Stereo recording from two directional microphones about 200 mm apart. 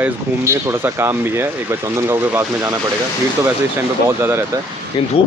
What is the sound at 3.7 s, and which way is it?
Speech, 10° right (ahead or behind).